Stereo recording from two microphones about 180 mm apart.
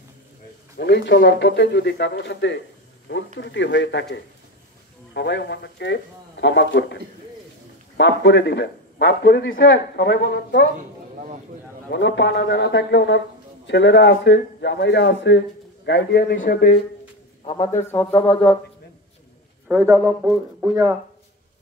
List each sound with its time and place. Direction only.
0.7 s a man's voice: 70° left (ahead or behind)
8.0 s a man's voice: 75° left (ahead or behind)
11.1 s a sound: 40° right (ahead or behind)
11.9 s a man's voice: 75° left (ahead or behind)
17.5 s a man's voice: 40° left (ahead or behind)
17.8 s speech: 10° left (ahead or behind)
19.7 s speech: 15° right (ahead or behind)